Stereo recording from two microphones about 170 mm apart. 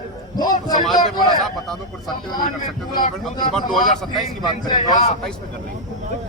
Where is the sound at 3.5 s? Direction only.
Centre (ahead or behind).